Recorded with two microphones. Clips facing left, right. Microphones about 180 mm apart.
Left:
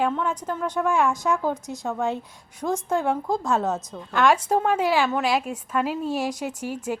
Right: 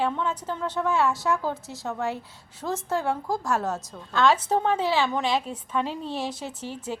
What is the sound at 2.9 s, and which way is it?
A woman's voice, 15° left (ahead or behind).